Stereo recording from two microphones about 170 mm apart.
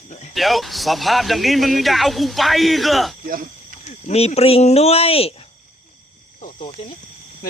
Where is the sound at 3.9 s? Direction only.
40° left (ahead or behind).